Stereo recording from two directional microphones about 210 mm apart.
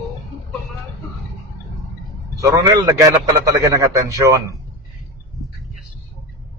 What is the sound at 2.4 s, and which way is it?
A man's voice, 15° right (ahead or behind).